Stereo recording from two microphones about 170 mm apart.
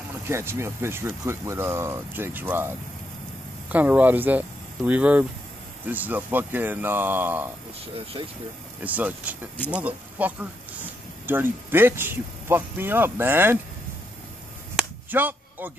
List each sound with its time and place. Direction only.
0.3 s speech: 15° right (ahead or behind)
7.9 s speech: 35° right (ahead or behind)
8.8 s speech: 10° right (ahead or behind)
14.8 s a sound: 10° right (ahead or behind)